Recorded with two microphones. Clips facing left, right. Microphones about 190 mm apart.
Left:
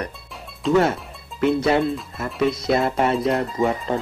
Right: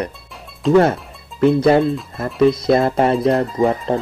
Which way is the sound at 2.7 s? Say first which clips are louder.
Right 5 dB; 35° right (ahead or behind).